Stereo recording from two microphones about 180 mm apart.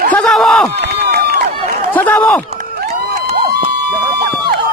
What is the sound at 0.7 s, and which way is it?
Run, 65° right (ahead or behind).